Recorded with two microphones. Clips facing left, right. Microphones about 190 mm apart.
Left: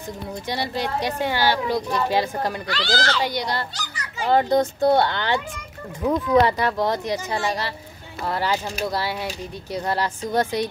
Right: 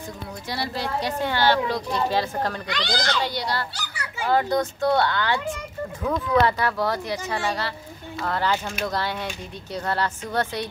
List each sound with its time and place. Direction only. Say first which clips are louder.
0.5 s speech: left 2 dB; 20° left (ahead or behind)
2.7 s speech: left 2 dB; 15° right (ahead or behind)
3.3 s speech: left 2 dB; 20° left (ahead or behind)
3.7 s children playing: even; 10° right (ahead or behind)
4.3 s speech: left 3 dB; 25° left (ahead or behind)